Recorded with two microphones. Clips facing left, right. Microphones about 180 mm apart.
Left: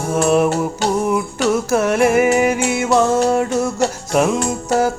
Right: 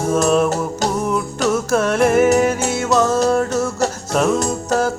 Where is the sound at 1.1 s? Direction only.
5° left (ahead or behind).